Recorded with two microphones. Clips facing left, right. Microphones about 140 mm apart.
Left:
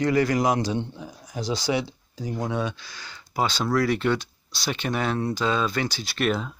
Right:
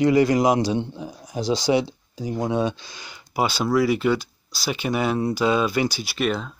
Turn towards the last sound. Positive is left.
turn(degrees=0)  # may be behind; listen again after turning